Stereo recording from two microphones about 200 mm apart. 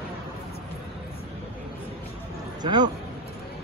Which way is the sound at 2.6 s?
20° right (ahead or behind).